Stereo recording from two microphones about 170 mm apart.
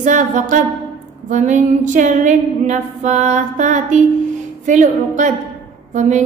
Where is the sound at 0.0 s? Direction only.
45° right (ahead or behind).